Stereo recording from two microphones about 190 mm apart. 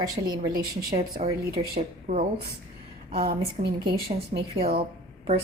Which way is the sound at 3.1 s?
55° right (ahead or behind).